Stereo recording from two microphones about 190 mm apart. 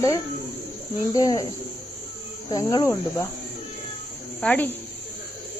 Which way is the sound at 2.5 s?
20° left (ahead or behind).